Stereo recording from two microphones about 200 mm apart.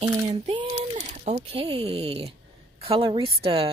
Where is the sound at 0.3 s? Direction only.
35° right (ahead or behind).